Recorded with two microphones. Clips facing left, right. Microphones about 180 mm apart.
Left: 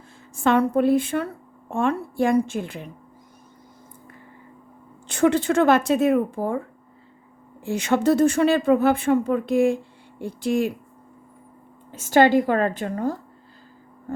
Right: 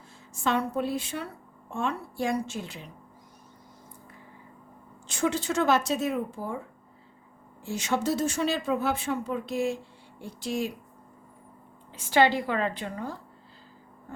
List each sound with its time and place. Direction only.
0.4 s speech: 55° left (ahead or behind)
5.0 s speech: 60° left (ahead or behind)
7.6 s speech: 60° left (ahead or behind)
11.9 s a woman's voice: 45° left (ahead or behind)